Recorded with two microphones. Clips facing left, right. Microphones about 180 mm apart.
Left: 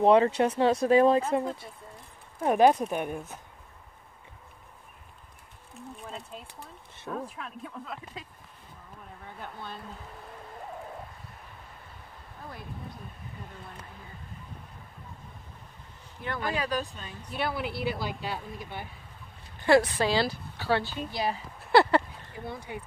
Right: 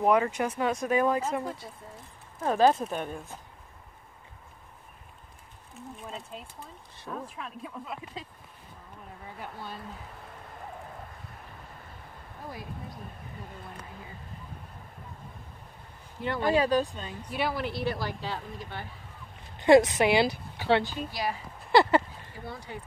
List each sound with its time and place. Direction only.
0.0 s speech: 30° left (ahead or behind); by 3.3 s 15° left (ahead or behind)
6.0 s speech: centre (ahead or behind)
9.4 s speech: 5° right (ahead or behind)
16.2 s speech: 20° right (ahead or behind)
17.3 s speech: centre (ahead or behind)
17.8 s speech: 10° left (ahead or behind)
19.6 s speech: 20° right (ahead or behind)
21.1 s speech: 25° left (ahead or behind)
21.7 s speech: centre (ahead or behind)
22.7 s speech: 15° left (ahead or behind)